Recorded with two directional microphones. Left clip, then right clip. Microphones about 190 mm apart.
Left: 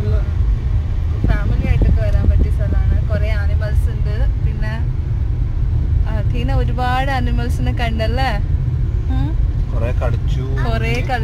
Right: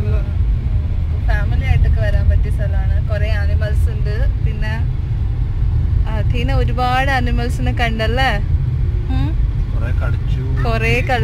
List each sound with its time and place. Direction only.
6.4 s speech: 15° right (ahead or behind)
10.6 s speech: 20° right (ahead or behind)